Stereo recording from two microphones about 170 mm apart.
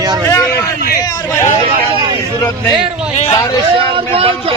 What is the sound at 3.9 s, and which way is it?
Speech, 30° right (ahead or behind).